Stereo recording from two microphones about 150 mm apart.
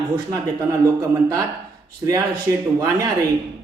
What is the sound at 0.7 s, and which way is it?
Speech, 20° right (ahead or behind).